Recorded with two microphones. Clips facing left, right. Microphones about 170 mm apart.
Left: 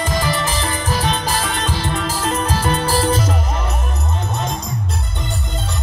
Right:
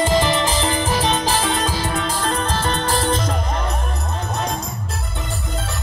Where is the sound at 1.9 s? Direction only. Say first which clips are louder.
Left 1 dB; centre (ahead or behind).